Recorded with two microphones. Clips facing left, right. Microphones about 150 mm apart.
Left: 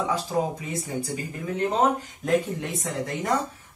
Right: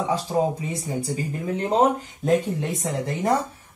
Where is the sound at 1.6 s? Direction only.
30° right (ahead or behind).